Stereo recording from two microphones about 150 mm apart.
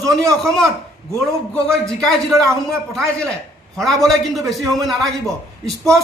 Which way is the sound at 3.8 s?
Centre (ahead or behind).